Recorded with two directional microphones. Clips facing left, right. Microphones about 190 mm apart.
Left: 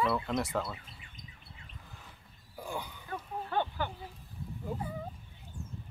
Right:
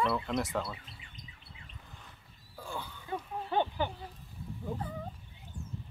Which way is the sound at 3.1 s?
15° right (ahead or behind).